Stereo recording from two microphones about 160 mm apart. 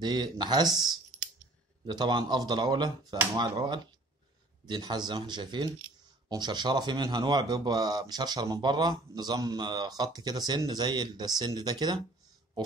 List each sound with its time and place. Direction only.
0.0 s speech: 30° right (ahead or behind)
0.7 s speech: centre (ahead or behind)
1.9 s speech: 30° right (ahead or behind)